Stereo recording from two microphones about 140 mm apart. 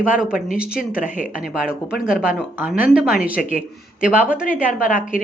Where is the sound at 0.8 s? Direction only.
75° left (ahead or behind).